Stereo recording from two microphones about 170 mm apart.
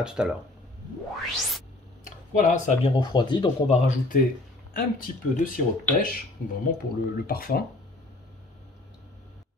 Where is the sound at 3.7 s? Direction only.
55° left (ahead or behind).